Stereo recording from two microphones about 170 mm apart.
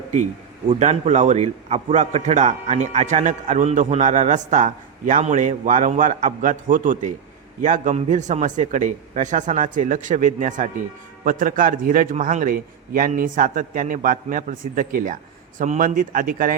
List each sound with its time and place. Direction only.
0.7 s a man's voice: 40° right (ahead or behind)